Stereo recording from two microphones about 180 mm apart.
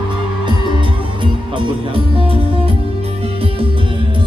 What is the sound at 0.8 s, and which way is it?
Music, 30° right (ahead or behind).